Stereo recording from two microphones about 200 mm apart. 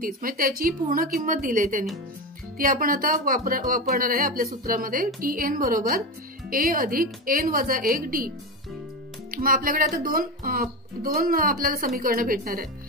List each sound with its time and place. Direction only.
0.0 s speech: 45° right (ahead or behind)
9.3 s speech: 45° right (ahead or behind)